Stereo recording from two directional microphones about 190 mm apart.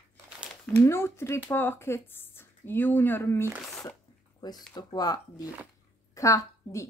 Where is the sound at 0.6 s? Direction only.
10° left (ahead or behind).